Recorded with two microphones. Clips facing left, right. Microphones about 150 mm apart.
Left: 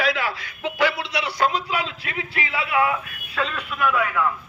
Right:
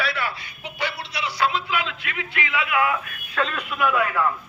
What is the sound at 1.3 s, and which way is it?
Speech, 40° left (ahead or behind).